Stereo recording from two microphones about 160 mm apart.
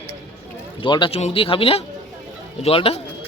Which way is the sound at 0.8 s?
30° left (ahead or behind).